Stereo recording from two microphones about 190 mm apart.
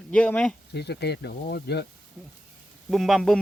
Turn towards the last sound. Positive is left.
turn(degrees=0)  # may be behind; listen again after turning